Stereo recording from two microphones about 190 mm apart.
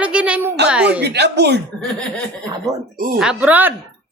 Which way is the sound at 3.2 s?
5° right (ahead or behind).